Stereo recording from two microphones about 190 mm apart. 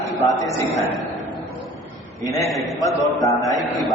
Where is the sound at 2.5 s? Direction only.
Centre (ahead or behind).